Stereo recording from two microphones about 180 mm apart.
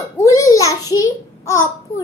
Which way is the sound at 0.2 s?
15° left (ahead or behind).